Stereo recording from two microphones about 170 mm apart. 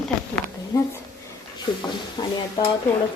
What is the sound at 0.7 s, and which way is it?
Speech, 20° left (ahead or behind).